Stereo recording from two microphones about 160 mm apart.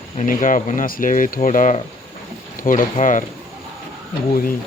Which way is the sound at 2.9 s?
50° left (ahead or behind).